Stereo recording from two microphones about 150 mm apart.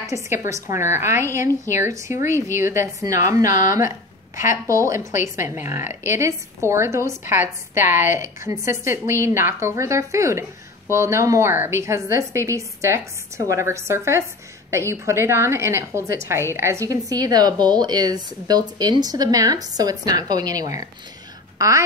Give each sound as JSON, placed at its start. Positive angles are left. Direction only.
{"t": 0.1, "sound": "a woman's voice", "side_deg": -20}
{"t": 3.4, "sound": "speech", "side_deg": 60}
{"t": 4.6, "sound": "a woman's voice", "side_deg": -20}